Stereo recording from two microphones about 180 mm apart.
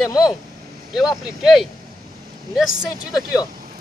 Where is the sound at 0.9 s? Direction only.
Centre (ahead or behind).